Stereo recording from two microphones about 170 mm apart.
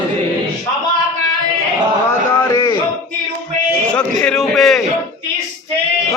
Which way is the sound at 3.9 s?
5° left (ahead or behind).